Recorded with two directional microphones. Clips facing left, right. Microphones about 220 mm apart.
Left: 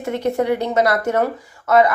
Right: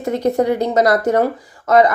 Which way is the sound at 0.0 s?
40° right (ahead or behind).